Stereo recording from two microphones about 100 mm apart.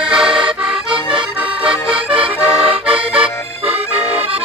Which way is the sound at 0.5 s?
60° right (ahead or behind).